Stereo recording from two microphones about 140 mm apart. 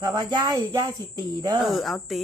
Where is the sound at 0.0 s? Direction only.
30° right (ahead or behind).